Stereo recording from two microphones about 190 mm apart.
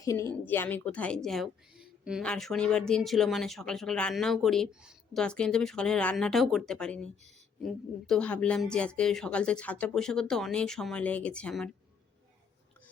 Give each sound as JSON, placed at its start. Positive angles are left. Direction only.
{"t": 0.0, "sound": "a woman's voice", "side_deg": 15}